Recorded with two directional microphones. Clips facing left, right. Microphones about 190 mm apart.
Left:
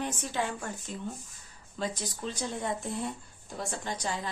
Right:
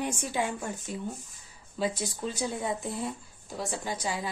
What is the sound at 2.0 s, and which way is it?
A woman's voice, 10° right (ahead or behind).